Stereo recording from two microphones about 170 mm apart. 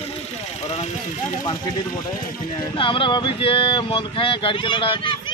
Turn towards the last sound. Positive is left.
turn(degrees=30)  # may be behind; listen again after turning